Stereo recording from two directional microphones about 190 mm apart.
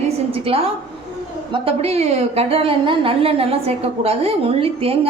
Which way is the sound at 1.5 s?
30° right (ahead or behind).